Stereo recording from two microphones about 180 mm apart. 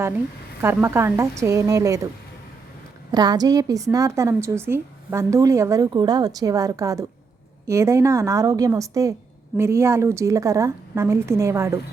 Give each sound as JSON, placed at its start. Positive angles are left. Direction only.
{"t": 0.6, "sound": "a woman's voice", "side_deg": -15}
{"t": 3.1, "sound": "a woman's voice", "side_deg": -20}